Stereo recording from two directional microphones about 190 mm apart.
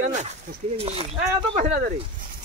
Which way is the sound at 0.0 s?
40° right (ahead or behind).